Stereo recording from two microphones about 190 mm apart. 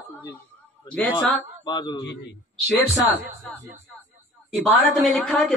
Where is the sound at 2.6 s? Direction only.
5° left (ahead or behind).